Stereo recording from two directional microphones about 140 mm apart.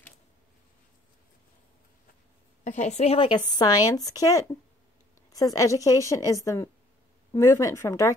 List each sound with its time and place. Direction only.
2.6 s speech: 55° left (ahead or behind); by 8.1 s 20° left (ahead or behind)